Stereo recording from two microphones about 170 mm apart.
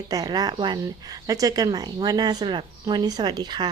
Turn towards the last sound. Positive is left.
turn(degrees=-25)  # may be behind; listen again after turning